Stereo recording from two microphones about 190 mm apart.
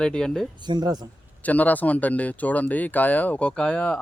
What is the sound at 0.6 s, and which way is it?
Speech, 25° right (ahead or behind).